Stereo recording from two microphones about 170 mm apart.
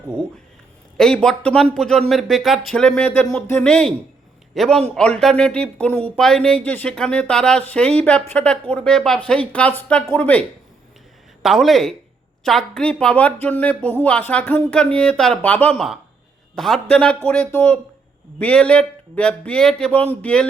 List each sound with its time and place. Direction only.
0.9 s speech: 5° left (ahead or behind)
11.4 s speech: centre (ahead or behind)